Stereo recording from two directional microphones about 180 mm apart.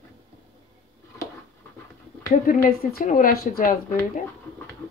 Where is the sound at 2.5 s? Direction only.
50° left (ahead or behind).